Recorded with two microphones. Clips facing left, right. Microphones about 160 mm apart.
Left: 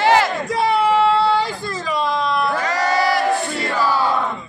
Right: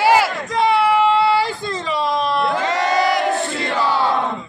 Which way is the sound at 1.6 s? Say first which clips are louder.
Right 1 dB; 25° right (ahead or behind).